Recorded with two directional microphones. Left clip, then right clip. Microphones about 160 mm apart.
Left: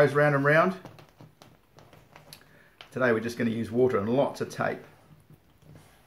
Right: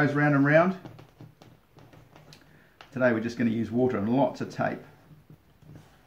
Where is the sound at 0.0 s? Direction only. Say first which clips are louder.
Left 2 dB; 20° left (ahead or behind).